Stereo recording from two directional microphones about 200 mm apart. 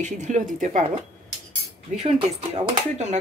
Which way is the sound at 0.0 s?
35° right (ahead or behind).